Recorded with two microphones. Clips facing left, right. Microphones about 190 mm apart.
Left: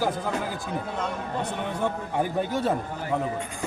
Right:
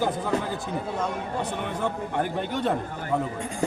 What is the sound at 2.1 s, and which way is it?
Speech, 10° left (ahead or behind).